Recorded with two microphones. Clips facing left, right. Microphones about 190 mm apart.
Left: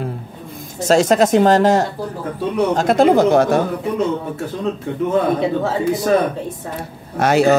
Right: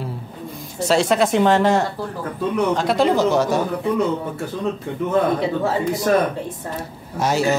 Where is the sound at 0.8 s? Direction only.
45° left (ahead or behind).